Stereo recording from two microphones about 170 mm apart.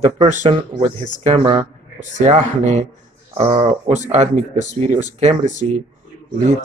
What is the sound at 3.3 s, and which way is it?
Speech, 30° right (ahead or behind).